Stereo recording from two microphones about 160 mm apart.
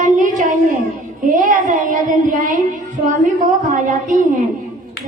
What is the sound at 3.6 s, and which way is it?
Speech, 55° right (ahead or behind).